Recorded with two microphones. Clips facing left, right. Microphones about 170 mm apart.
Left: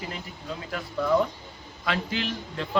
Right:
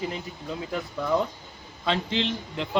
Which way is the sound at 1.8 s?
25° right (ahead or behind).